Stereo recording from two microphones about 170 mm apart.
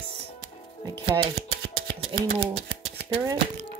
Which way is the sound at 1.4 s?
65° right (ahead or behind).